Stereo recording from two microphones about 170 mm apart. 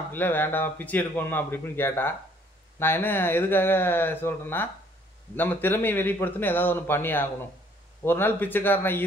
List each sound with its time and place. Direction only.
0.1 s a man's voice: 10° left (ahead or behind)